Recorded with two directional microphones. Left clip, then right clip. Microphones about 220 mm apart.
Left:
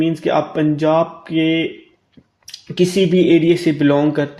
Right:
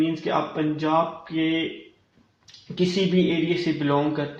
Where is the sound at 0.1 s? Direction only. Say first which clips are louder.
Left 7 dB; 50° left (ahead or behind).